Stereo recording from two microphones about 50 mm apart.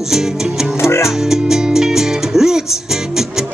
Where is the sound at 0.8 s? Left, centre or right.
Left.